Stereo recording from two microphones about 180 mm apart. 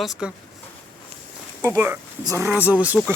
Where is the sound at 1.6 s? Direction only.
15° right (ahead or behind).